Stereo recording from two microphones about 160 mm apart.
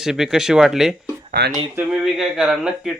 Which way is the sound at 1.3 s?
90° right.